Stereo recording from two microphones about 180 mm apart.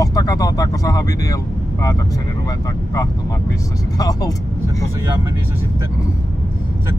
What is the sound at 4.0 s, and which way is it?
Speech, 20° left (ahead or behind).